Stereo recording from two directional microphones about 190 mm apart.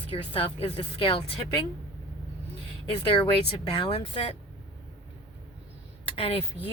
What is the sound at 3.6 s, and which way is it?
Speech, 30° left (ahead or behind).